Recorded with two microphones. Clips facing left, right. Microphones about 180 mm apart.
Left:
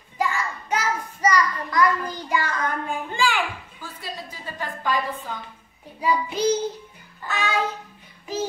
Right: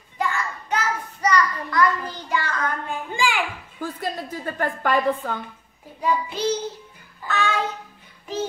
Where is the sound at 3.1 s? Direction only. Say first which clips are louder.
Even; 15° right (ahead or behind).